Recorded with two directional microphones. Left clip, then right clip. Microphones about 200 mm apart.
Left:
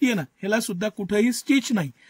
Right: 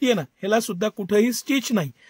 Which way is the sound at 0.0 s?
45° right (ahead or behind).